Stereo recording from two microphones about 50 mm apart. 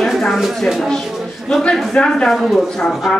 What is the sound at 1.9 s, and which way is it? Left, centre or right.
Speech, centre.